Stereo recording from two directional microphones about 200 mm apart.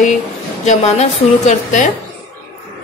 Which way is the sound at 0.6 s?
35° left (ahead or behind).